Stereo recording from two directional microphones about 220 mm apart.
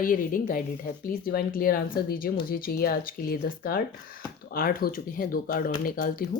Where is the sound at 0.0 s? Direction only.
40° left (ahead or behind).